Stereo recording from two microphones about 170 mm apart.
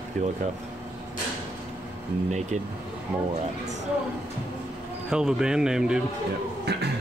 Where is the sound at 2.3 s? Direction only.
40° right (ahead or behind).